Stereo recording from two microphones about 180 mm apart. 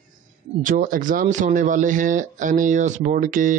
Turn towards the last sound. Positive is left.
turn(degrees=-45)  # may be behind; listen again after turning